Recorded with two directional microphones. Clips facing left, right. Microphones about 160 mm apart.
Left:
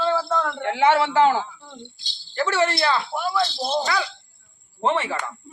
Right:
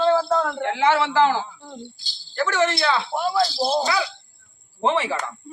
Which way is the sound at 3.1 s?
30° right (ahead or behind).